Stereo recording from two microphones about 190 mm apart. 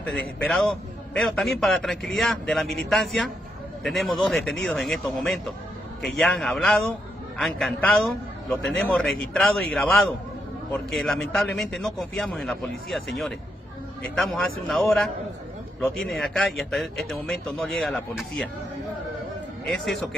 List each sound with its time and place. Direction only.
0.0 s a man's voice: 5° left (ahead or behind)
19.6 s a man's voice: centre (ahead or behind)